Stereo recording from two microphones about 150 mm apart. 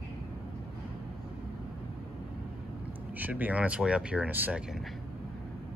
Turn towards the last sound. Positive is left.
turn(degrees=-5)  # may be behind; listen again after turning